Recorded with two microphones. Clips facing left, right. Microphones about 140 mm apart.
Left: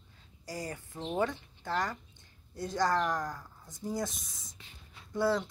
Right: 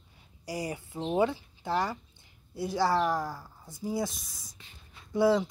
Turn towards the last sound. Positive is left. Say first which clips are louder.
# right 5 dB
turn(degrees=-10)  # may be behind; listen again after turning